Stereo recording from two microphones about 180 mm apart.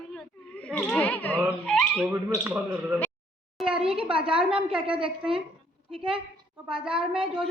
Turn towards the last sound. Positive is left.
turn(degrees=-30)  # may be behind; listen again after turning